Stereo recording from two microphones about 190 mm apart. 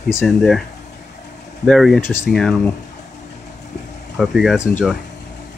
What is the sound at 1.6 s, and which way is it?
Speech, centre (ahead or behind).